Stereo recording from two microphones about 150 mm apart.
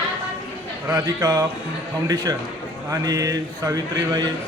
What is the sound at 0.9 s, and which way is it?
A man's voice, 20° right (ahead or behind).